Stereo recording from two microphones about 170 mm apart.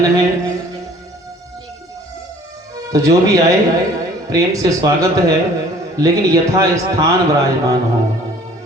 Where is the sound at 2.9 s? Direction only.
20° right (ahead or behind).